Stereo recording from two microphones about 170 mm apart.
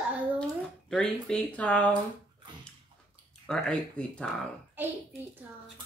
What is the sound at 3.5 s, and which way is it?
Speech, 5° left (ahead or behind).